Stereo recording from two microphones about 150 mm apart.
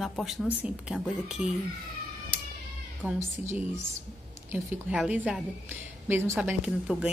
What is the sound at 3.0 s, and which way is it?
Speech, 15° right (ahead or behind).